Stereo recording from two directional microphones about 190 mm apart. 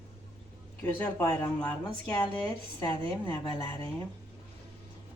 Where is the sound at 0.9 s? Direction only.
10° left (ahead or behind).